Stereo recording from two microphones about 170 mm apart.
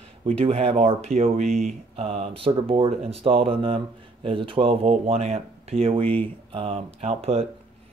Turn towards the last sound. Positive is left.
turn(degrees=-35)  # may be behind; listen again after turning